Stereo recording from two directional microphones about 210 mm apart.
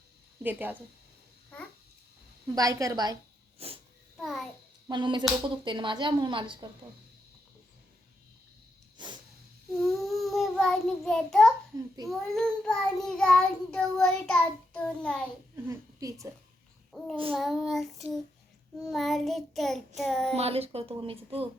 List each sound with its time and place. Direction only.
0.4 s a woman's voice: 10° right (ahead or behind)
2.6 s a woman's voice: 15° right (ahead or behind)
3.6 s speech: 30° right (ahead or behind)
4.2 s a child's voice: centre (ahead or behind)
4.9 s speech: 20° right (ahead or behind)
9.0 s a sound: 20° right (ahead or behind)
9.8 s child singing: centre (ahead or behind)
15.6 s a woman's voice: 15° right (ahead or behind)
16.9 s a child's voice: centre (ahead or behind)
17.3 s child singing: centre (ahead or behind)
20.3 s speech: 30° right (ahead or behind)